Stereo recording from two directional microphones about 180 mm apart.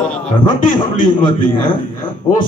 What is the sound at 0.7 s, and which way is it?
Speech, 25° left (ahead or behind).